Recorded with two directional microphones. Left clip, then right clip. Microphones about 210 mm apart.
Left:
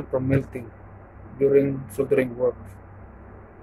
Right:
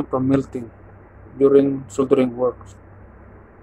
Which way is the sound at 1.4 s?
15° right (ahead or behind).